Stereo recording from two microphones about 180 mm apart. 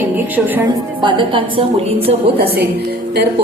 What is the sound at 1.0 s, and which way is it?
Speech, 30° right (ahead or behind).